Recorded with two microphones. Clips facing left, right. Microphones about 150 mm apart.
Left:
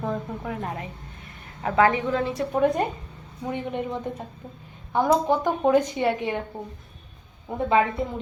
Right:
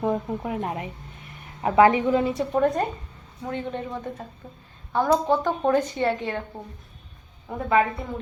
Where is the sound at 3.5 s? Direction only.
15° left (ahead or behind).